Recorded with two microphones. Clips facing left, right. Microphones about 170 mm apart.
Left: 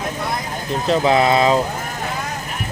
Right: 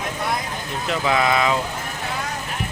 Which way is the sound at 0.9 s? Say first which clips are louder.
Left 5 dB; 35° left (ahead or behind).